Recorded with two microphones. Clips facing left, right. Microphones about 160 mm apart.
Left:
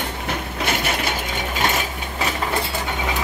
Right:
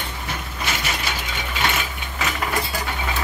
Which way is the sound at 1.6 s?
40° left (ahead or behind).